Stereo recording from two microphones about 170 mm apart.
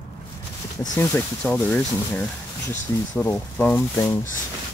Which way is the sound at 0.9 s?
10° left (ahead or behind).